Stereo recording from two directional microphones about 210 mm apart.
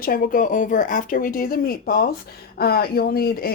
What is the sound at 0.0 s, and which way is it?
Speech, 40° left (ahead or behind).